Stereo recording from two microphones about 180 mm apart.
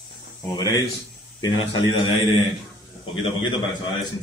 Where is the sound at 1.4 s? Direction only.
25° left (ahead or behind).